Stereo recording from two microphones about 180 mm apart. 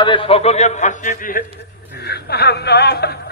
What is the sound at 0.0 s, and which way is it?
A man's voice, 30° left (ahead or behind).